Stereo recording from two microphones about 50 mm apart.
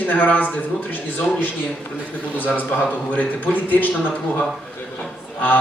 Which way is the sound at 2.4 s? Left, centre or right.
Left.